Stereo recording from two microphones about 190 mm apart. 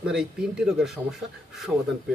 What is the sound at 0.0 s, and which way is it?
Speech, 5° right (ahead or behind).